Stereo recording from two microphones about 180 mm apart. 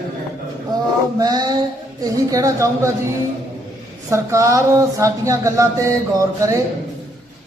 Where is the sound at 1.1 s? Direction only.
20° right (ahead or behind).